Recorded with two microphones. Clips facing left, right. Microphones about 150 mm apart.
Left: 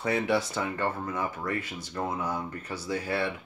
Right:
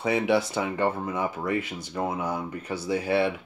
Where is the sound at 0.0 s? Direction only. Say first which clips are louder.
Right 3 dB; 10° right (ahead or behind).